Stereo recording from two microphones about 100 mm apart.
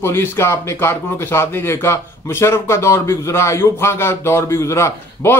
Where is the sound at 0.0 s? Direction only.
25° left (ahead or behind).